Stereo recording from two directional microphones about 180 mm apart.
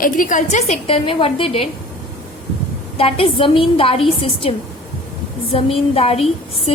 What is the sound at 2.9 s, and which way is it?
A woman's voice, 30° left (ahead or behind).